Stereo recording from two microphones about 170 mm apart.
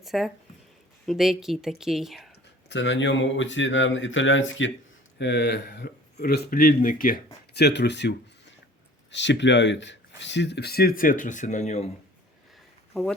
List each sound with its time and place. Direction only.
0.0 s speech: centre (ahead or behind)
2.6 s speech: 90° left; by 7.2 s 55° left (ahead or behind)
7.5 s speech: 80° left
9.1 s speech: 90° left; by 11.9 s 40° left (ahead or behind)
12.9 s speech: 5° left (ahead or behind)